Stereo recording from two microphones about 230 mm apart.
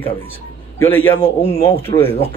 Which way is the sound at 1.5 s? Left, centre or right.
Left.